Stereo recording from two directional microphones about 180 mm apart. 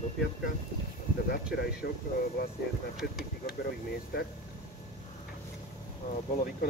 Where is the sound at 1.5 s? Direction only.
60° left (ahead or behind).